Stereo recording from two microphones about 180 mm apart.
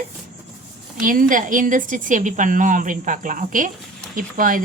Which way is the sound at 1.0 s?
50° right (ahead or behind).